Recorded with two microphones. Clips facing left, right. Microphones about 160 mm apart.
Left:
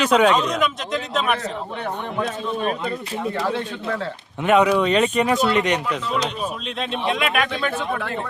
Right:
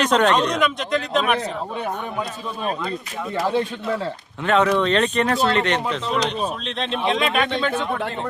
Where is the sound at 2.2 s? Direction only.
90° left.